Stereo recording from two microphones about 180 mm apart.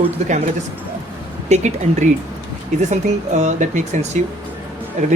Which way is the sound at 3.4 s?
40° right (ahead or behind).